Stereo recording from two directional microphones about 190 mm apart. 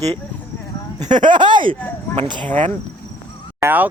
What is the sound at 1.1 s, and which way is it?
Speech, 25° right (ahead or behind).